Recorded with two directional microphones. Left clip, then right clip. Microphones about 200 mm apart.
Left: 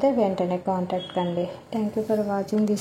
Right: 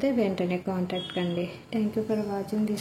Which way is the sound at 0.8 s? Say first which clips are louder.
Left 4 dB; centre (ahead or behind).